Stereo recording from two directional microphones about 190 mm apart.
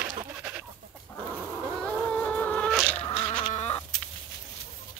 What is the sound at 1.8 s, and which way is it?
Cat, 5° left (ahead or behind).